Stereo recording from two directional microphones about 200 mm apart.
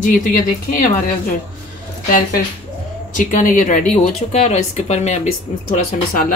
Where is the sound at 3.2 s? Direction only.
40° left (ahead or behind).